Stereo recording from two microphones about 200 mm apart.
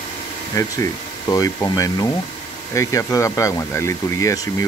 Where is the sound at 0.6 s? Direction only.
15° left (ahead or behind).